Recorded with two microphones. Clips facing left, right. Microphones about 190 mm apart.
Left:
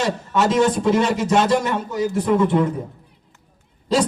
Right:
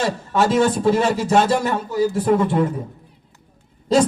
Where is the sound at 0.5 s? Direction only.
35° right (ahead or behind).